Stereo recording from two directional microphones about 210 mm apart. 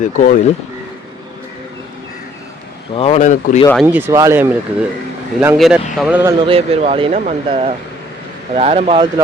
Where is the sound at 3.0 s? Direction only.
30° left (ahead or behind).